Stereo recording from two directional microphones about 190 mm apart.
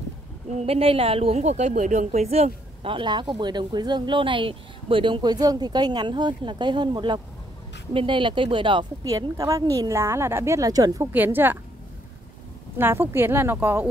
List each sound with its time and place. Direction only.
0.5 s a woman's voice: 35° right (ahead or behind); by 11.5 s 10° right (ahead or behind)
12.7 s a woman's voice: 10° right (ahead or behind)